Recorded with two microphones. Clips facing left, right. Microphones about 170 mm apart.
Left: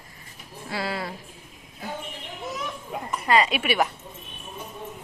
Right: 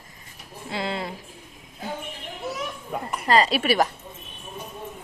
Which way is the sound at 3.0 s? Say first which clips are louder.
Right 1 dB; 35° right (ahead or behind).